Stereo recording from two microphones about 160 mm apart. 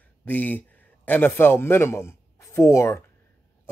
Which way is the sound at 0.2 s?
10° left (ahead or behind).